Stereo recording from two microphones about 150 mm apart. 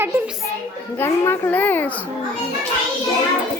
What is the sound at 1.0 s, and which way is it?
A child's voice, 15° left (ahead or behind).